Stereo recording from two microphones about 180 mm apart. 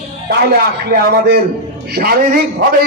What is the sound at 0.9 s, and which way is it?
A man's voice, 65° right (ahead or behind).